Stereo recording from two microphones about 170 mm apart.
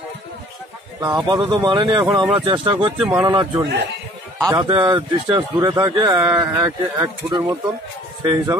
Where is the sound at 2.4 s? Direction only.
30° right (ahead or behind).